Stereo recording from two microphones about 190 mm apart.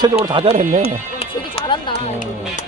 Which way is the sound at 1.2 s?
25° left (ahead or behind).